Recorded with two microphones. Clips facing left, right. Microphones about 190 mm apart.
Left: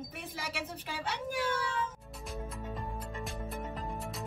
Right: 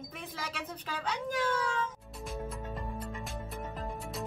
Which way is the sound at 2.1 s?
Centre (ahead or behind).